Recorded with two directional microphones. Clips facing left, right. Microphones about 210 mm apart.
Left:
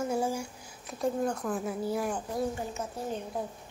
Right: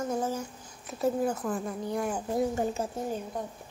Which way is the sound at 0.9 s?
5° right (ahead or behind).